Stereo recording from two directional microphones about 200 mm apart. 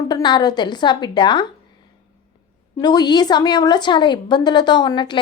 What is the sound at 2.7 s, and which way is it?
A woman's voice, 20° left (ahead or behind).